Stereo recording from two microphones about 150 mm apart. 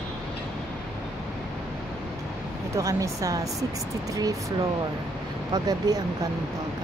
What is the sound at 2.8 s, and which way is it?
Speech, 20° right (ahead or behind).